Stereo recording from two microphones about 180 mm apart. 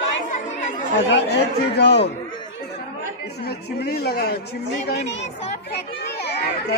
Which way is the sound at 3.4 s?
60° left (ahead or behind).